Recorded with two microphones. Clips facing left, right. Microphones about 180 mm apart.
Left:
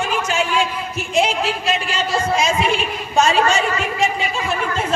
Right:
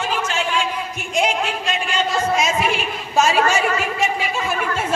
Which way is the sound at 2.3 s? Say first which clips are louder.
Left 2 dB; centre (ahead or behind).